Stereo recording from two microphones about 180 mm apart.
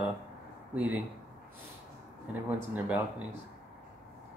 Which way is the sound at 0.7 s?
10° right (ahead or behind).